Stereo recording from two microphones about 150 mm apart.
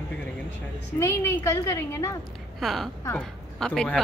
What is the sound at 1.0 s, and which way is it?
A woman's voice, 20° left (ahead or behind).